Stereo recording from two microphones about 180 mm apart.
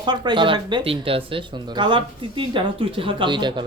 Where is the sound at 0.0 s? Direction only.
25° right (ahead or behind).